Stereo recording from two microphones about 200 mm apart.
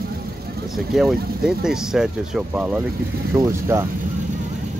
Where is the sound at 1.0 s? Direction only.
Centre (ahead or behind).